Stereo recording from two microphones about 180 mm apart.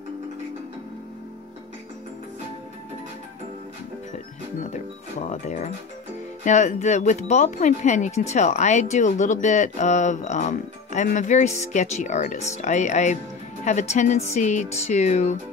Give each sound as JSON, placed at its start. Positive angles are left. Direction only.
{"t": 5.3, "sound": "speech", "side_deg": 40}